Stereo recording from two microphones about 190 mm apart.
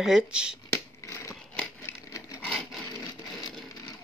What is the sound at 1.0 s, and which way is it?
Scissors, 15° left (ahead or behind).